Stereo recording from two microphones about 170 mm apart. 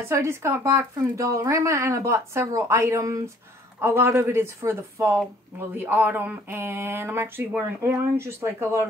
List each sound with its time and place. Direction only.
0.1 s speech: 15° right (ahead or behind)